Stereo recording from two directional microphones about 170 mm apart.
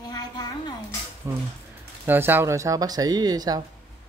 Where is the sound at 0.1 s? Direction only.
25° left (ahead or behind).